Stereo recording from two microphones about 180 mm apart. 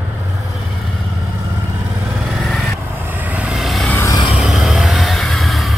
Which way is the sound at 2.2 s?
Centre (ahead or behind).